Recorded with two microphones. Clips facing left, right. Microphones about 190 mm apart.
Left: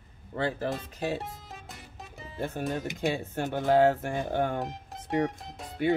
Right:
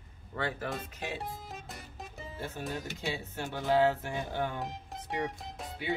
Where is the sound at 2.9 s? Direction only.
50° left (ahead or behind).